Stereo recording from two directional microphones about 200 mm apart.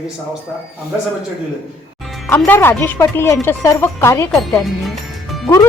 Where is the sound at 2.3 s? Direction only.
10° left (ahead or behind).